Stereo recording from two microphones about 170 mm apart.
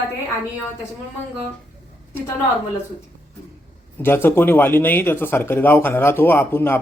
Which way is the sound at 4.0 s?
15° left (ahead or behind).